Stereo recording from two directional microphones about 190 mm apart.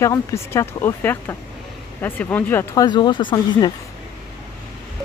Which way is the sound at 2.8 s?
25° left (ahead or behind).